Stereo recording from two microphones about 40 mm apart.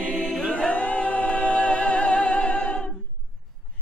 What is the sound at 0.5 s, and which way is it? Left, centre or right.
Music, left.